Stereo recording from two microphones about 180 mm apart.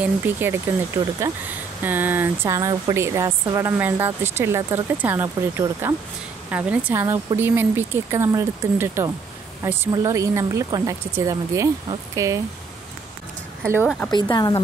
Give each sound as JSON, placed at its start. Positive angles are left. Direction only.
{"t": 0.0, "sound": "a woman's voice", "side_deg": -10}
{"t": 13.8, "sound": "speech", "side_deg": 5}
{"t": 14.3, "sound": "speech", "side_deg": 25}